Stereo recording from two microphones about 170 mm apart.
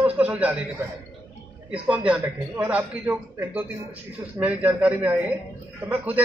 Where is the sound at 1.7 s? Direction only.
10° right (ahead or behind).